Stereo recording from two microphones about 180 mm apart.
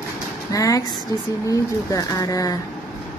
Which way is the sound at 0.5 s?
20° left (ahead or behind).